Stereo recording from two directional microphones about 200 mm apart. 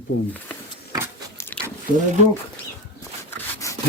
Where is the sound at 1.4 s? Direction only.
10° left (ahead or behind).